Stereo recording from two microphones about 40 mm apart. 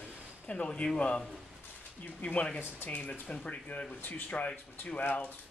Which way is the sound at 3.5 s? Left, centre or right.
Left.